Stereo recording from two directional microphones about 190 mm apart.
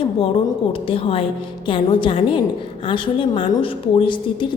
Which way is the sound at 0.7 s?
30° left (ahead or behind).